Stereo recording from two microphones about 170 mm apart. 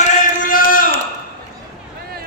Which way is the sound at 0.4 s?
55° left (ahead or behind).